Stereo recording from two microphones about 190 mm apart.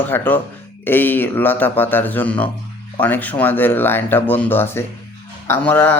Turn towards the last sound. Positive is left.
turn(degrees=10)  # may be behind; listen again after turning